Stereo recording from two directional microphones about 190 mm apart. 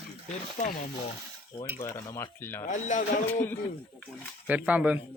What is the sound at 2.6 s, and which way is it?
Speech, 40° left (ahead or behind).